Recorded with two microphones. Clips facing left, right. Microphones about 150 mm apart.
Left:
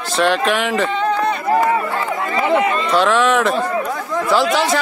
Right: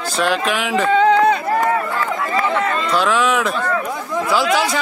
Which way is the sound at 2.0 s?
20° left (ahead or behind).